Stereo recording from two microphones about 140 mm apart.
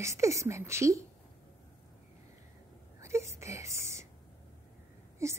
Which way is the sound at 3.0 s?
20° right (ahead or behind).